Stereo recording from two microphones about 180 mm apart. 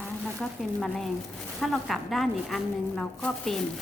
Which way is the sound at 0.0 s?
5° left (ahead or behind).